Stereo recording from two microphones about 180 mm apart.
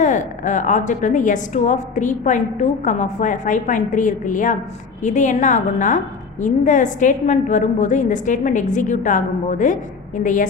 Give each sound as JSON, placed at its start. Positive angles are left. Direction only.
{"t": 0.0, "sound": "a woman's voice", "side_deg": 45}